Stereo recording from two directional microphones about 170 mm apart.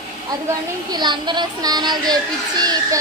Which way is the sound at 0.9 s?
25° right (ahead or behind).